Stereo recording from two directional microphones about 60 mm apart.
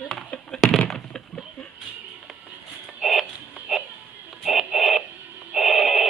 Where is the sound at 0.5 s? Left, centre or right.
Centre.